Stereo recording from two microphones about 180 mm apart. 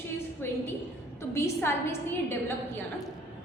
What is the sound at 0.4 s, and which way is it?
A woman's voice, 10° left (ahead or behind).